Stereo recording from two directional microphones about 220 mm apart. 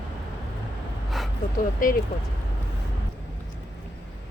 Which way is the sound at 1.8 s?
40° left (ahead or behind).